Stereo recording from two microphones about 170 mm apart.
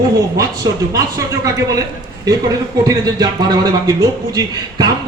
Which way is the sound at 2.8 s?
20° right (ahead or behind).